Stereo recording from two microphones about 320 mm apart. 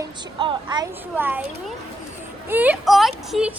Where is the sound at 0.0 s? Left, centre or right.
Centre.